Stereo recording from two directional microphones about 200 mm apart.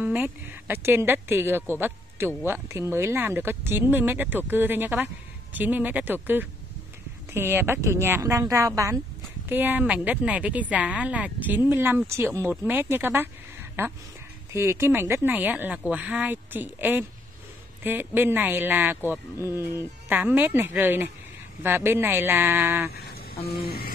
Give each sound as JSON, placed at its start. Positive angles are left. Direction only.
{"t": 0.0, "sound": "a woman's voice", "side_deg": -10}
{"t": 20.1, "sound": "a woman's voice", "side_deg": -10}
{"t": 23.4, "sound": "vehicle", "side_deg": 50}